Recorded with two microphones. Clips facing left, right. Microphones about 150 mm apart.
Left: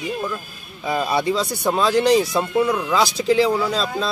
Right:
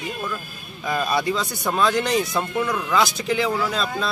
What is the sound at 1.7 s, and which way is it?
Speech, 35° left (ahead or behind).